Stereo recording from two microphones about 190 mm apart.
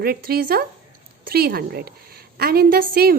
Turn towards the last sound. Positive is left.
turn(degrees=-50)  # may be behind; listen again after turning